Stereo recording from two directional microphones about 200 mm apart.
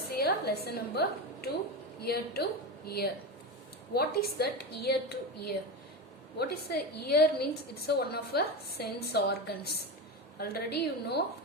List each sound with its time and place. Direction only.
0.2 s a woman's voice: 50° left (ahead or behind)